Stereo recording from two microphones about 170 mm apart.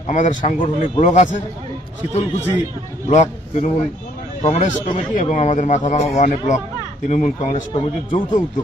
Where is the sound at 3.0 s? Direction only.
45° left (ahead or behind).